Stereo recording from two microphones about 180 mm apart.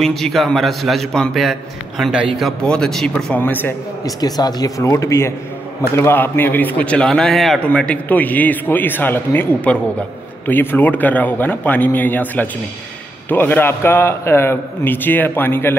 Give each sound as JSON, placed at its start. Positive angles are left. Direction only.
{"t": 0.0, "sound": "a man's voice", "side_deg": 0}
{"t": 4.2, "sound": "a man's voice", "side_deg": 20}